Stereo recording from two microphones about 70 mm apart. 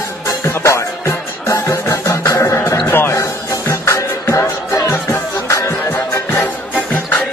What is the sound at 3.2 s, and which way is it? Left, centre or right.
Music, left.